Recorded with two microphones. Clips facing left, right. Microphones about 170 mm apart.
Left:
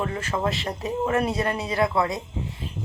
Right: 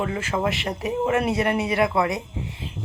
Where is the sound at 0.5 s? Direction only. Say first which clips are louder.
Right 2 dB; 25° right (ahead or behind).